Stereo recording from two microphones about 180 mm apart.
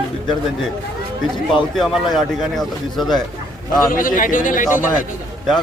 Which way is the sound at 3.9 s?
50° left (ahead or behind).